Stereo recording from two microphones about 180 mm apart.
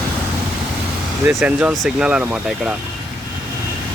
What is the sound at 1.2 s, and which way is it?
Speech, 5° right (ahead or behind).